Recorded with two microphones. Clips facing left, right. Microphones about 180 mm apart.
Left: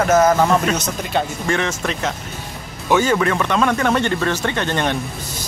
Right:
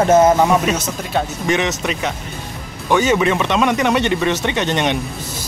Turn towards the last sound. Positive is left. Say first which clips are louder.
# right 2 dB
turn(degrees=-20)  # may be behind; listen again after turning